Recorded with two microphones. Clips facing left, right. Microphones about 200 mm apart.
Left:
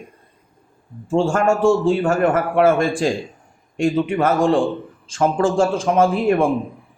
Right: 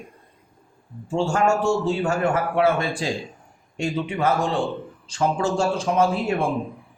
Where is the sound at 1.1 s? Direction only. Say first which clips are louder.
Left 4 dB; 50° left (ahead or behind).